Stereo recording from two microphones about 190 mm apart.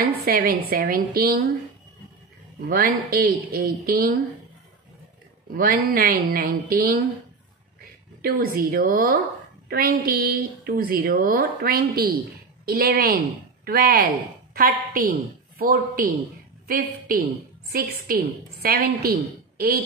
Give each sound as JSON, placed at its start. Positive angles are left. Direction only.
{"t": 0.2, "sound": "a woman's voice", "side_deg": -55}
{"t": 2.6, "sound": "a woman's voice", "side_deg": -50}
{"t": 5.5, "sound": "a woman's voice", "side_deg": -50}
{"t": 8.2, "sound": "a woman's voice", "side_deg": -50}